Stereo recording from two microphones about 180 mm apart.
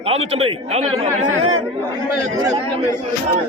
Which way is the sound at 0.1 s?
35° right (ahead or behind).